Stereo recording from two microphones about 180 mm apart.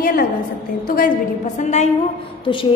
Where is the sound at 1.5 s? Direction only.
40° left (ahead or behind).